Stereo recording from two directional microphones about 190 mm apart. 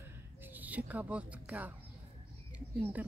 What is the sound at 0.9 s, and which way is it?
Speech, 5° right (ahead or behind).